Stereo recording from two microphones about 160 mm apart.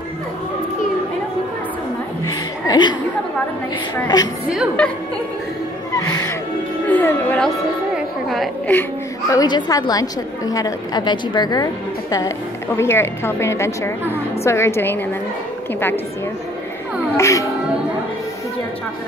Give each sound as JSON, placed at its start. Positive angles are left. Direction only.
{"t": 2.2, "sound": "chuckle", "side_deg": 25}
{"t": 4.1, "sound": "a woman's voice", "side_deg": 25}
{"t": 4.5, "sound": "a woman's voice", "side_deg": -5}
{"t": 5.9, "sound": "a woman's voice", "side_deg": 20}
{"t": 9.3, "sound": "a woman's voice", "side_deg": 25}
{"t": 17.2, "sound": "a woman's voice", "side_deg": 20}